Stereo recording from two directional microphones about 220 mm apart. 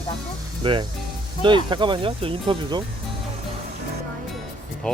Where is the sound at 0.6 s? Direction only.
20° right (ahead or behind).